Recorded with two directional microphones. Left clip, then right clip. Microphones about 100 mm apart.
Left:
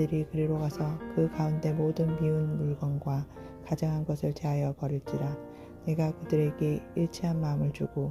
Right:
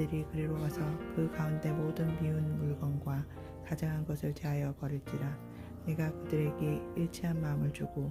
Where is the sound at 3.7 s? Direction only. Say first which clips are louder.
Left 7 dB; 35° left (ahead or behind).